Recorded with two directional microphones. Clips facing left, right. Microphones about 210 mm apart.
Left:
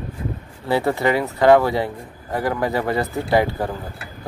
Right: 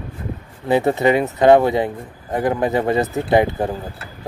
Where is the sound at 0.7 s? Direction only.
20° right (ahead or behind).